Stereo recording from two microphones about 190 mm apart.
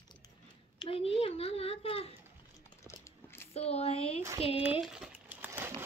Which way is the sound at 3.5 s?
30° left (ahead or behind).